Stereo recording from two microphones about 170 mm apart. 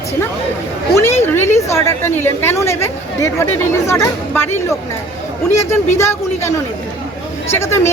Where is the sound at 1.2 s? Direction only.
15° left (ahead or behind).